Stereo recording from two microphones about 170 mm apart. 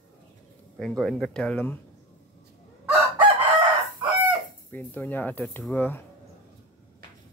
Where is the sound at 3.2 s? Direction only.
30° right (ahead or behind).